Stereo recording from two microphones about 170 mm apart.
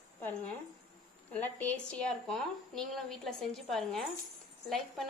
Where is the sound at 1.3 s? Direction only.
10° left (ahead or behind).